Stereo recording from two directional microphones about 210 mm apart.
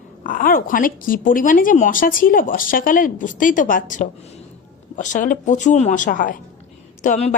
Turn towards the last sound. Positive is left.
turn(degrees=35)  # may be behind; listen again after turning